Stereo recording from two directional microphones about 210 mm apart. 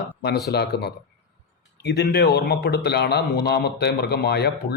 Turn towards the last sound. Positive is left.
turn(degrees=50)  # may be behind; listen again after turning